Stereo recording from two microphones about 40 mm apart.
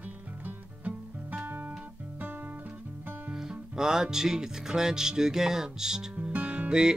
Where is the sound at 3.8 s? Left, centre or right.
Centre.